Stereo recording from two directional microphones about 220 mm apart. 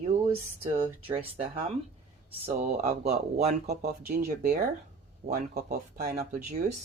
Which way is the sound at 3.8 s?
40° right (ahead or behind).